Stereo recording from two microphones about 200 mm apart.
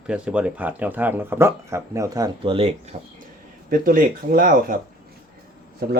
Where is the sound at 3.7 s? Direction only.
45° right (ahead or behind).